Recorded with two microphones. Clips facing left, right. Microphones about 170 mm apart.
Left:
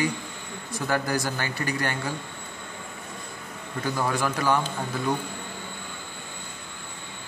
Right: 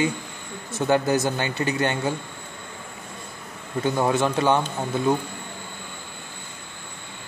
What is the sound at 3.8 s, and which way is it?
Speech, 25° right (ahead or behind).